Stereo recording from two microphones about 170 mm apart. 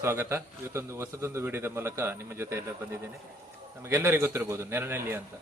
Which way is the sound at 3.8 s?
15° right (ahead or behind).